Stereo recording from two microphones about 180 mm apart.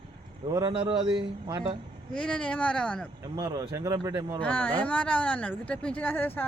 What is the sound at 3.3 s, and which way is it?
Speech, 20° right (ahead or behind).